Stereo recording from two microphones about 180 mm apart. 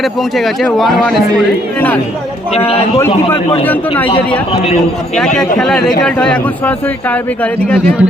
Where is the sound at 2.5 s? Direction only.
35° left (ahead or behind).